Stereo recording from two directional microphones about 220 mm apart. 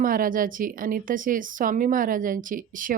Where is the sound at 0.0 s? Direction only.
40° right (ahead or behind).